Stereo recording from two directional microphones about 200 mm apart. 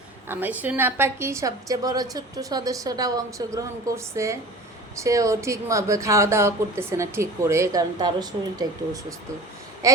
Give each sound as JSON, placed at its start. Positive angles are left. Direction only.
{"t": 0.3, "sound": "speech", "side_deg": -10}